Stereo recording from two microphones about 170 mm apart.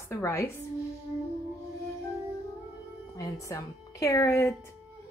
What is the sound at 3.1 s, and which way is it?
Speech, 20° left (ahead or behind).